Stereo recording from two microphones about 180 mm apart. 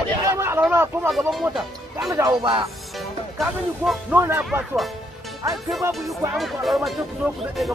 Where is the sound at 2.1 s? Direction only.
25° right (ahead or behind).